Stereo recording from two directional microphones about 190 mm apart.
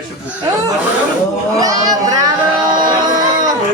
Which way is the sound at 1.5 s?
20° right (ahead or behind).